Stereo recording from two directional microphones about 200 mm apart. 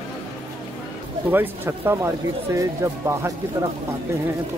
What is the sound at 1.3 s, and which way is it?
Speech, 10° right (ahead or behind).